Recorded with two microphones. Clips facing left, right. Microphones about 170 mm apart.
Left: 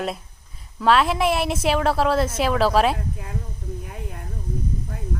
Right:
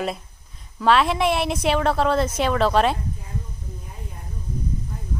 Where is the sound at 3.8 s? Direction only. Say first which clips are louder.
Left 5 dB; 70° left (ahead or behind).